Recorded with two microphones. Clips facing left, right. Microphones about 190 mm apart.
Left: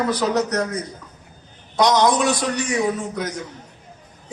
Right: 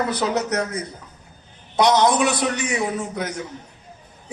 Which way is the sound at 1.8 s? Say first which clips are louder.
Even; 60° right (ahead or behind).